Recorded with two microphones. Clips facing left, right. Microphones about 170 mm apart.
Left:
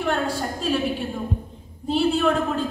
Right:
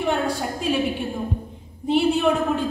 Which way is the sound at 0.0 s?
15° right (ahead or behind).